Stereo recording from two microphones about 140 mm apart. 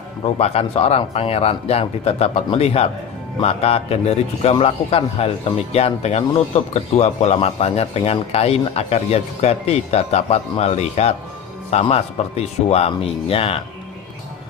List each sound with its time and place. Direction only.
0.2 s a man's voice: 45° left (ahead or behind)